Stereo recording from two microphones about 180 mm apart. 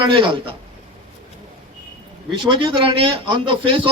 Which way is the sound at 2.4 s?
25° right (ahead or behind).